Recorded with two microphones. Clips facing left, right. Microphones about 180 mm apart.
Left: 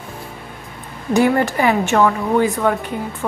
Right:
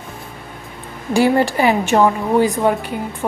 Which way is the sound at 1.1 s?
30° right (ahead or behind).